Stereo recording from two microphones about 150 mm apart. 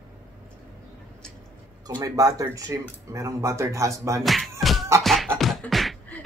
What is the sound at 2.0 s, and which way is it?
Speech, 25° right (ahead or behind).